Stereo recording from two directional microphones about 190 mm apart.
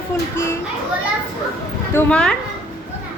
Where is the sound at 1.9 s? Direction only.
5° left (ahead or behind).